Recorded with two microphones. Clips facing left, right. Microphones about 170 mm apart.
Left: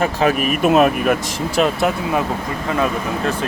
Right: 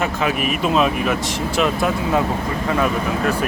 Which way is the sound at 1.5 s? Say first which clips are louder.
Left 3 dB; 30° left (ahead or behind).